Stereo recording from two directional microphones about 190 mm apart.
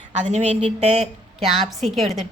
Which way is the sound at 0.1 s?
35° right (ahead or behind).